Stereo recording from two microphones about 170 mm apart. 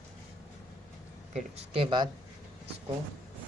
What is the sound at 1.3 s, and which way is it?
Speech, 35° right (ahead or behind).